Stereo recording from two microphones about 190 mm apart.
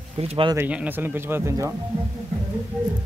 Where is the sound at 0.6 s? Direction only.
10° right (ahead or behind).